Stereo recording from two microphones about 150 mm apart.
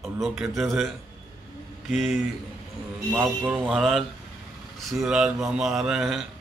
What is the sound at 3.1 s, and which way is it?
Speech, 10° right (ahead or behind).